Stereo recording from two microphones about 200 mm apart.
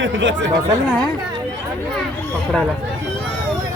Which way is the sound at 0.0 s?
65° right (ahead or behind).